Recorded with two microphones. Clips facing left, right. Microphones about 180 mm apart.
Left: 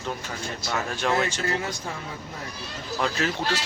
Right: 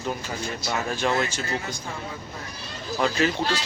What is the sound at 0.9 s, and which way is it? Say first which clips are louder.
Speech: left 1 dB; centre (ahead or behind).